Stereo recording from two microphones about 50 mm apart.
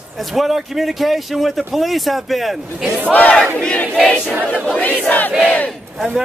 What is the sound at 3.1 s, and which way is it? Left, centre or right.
Battle cry, left.